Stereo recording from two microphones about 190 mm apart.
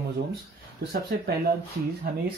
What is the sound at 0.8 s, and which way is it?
Speech, 50° right (ahead or behind).